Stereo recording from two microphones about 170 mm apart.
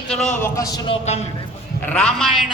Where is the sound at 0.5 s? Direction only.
20° left (ahead or behind).